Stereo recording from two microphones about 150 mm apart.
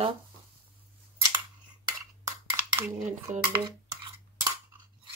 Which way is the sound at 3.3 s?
50° right (ahead or behind).